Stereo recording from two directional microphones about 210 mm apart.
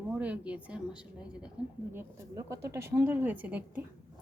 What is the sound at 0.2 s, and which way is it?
A woman's voice, 5° right (ahead or behind).